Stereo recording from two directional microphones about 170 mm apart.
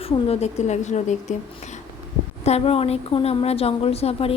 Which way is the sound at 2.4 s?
35° left (ahead or behind).